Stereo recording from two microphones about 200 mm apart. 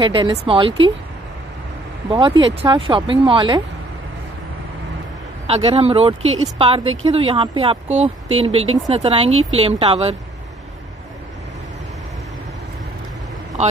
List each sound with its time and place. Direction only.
0.0 s speech: 25° right (ahead or behind)
2.0 s speech: 25° right (ahead or behind)
5.5 s speech: 30° right (ahead or behind)